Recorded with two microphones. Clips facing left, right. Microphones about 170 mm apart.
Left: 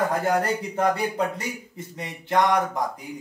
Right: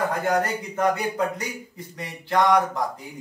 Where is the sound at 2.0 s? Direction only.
20° left (ahead or behind).